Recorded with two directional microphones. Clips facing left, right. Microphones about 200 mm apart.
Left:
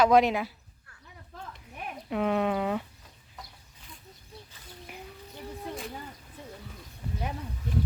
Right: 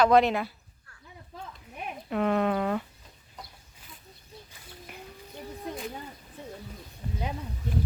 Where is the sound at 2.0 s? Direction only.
5° left (ahead or behind).